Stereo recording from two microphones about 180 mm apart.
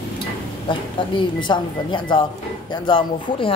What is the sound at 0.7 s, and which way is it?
Speech, 25° left (ahead or behind).